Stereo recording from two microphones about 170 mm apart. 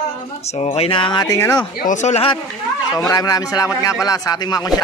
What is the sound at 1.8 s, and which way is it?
Speech, 45° left (ahead or behind).